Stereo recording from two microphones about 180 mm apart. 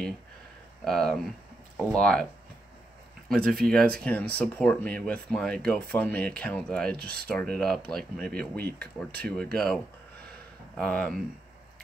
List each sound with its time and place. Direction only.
0.8 s speech: 5° left (ahead or behind)
3.3 s speech: centre (ahead or behind)
10.8 s speech: 5° left (ahead or behind)